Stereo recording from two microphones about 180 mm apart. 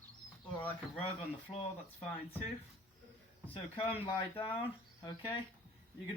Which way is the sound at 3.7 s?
30° left (ahead or behind).